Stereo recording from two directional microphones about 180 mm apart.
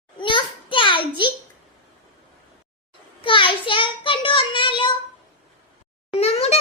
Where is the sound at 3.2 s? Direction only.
30° left (ahead or behind).